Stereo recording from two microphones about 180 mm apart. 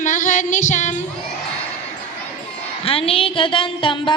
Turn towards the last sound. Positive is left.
turn(degrees=30)  # may be behind; listen again after turning